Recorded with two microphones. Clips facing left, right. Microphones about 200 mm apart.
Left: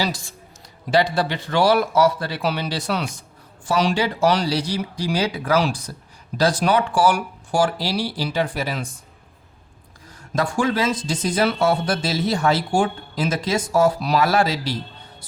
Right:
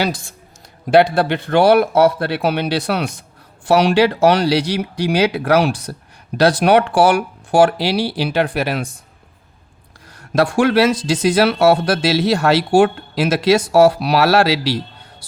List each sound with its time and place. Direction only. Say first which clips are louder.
0.0 s a man's voice: right 4 dB; 55° right (ahead or behind)
10.2 s speech: right 7 dB; 70° right (ahead or behind)